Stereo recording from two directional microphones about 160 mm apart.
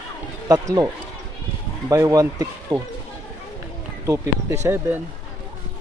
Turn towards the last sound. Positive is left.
turn(degrees=-15)  # may be behind; listen again after turning